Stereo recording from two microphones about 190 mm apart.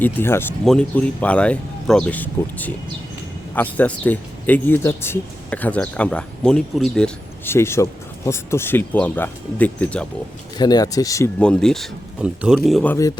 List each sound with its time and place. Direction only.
0.0 s speech: 10° left (ahead or behind)
10.6 s speech: 20° left (ahead or behind)
11.3 s speech: 5° left (ahead or behind)